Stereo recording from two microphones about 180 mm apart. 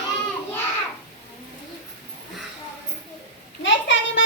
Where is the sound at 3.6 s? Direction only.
85° left.